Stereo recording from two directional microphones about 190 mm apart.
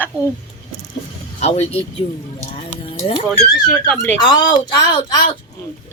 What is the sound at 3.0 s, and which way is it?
Speech, 30° left (ahead or behind).